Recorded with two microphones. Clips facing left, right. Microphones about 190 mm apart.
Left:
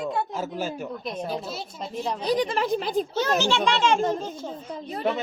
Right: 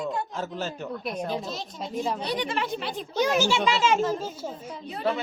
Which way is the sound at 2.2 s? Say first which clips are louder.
Left 5 dB; 40° left (ahead or behind).